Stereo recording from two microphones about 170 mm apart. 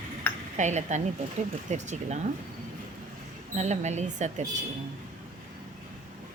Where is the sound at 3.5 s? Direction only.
45° right (ahead or behind).